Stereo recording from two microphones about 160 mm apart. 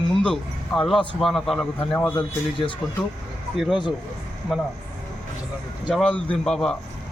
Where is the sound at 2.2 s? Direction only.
30° left (ahead or behind).